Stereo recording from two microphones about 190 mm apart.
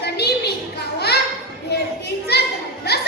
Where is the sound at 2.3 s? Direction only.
60° left (ahead or behind).